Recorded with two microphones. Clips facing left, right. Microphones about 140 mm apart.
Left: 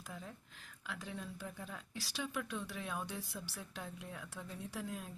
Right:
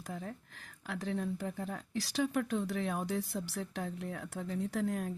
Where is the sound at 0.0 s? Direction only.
50° right (ahead or behind).